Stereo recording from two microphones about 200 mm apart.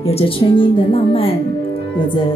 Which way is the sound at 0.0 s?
30° left (ahead or behind).